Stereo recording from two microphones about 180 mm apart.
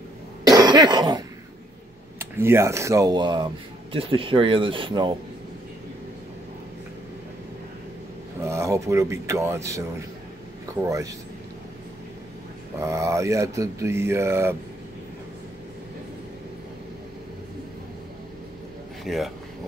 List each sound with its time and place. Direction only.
0.5 s cough: 20° right (ahead or behind)
2.1 s speech: 15° right (ahead or behind)
8.4 s speech: 15° right (ahead or behind)
12.8 s speech: 15° right (ahead or behind)
19.0 s speech: centre (ahead or behind)